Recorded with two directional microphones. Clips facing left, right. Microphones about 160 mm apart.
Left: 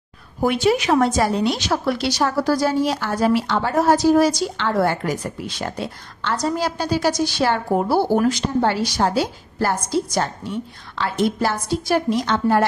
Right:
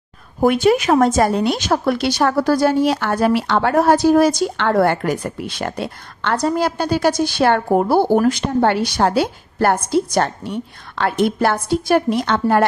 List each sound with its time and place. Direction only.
0.4 s a woman's voice: 50° right (ahead or behind)